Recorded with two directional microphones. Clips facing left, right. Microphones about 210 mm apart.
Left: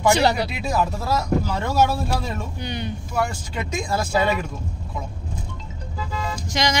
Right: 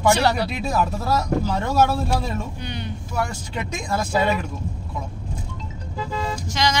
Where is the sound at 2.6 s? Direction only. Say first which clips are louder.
Left 2 dB; 15° left (ahead or behind).